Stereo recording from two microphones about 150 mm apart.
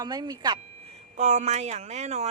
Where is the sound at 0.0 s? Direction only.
25° right (ahead or behind).